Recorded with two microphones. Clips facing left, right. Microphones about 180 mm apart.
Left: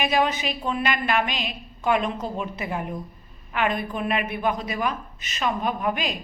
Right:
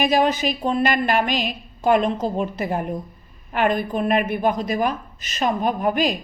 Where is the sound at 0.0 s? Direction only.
40° right (ahead or behind).